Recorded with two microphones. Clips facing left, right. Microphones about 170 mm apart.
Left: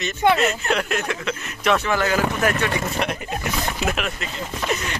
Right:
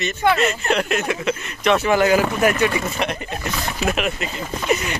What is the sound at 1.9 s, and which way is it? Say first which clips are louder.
Speech: right 5 dB; 15° right (ahead or behind).